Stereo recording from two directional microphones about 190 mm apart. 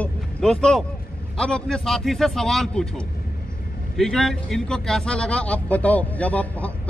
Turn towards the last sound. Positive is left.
turn(degrees=5)  # may be behind; listen again after turning